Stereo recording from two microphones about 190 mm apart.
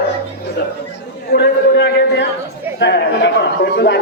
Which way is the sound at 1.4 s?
60° left (ahead or behind).